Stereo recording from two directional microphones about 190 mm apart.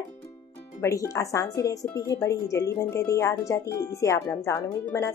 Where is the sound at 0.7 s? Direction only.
15° left (ahead or behind).